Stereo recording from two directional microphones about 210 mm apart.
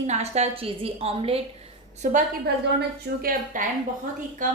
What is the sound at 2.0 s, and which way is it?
Speech, 40° right (ahead or behind).